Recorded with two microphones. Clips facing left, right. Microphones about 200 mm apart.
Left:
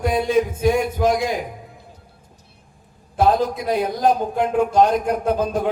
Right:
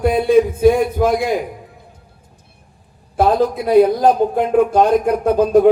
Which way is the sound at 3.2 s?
50° right (ahead or behind).